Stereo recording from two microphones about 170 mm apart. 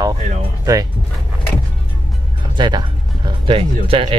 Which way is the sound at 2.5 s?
25° right (ahead or behind).